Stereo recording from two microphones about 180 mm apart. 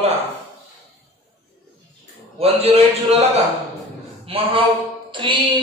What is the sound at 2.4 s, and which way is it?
Speech, 35° right (ahead or behind).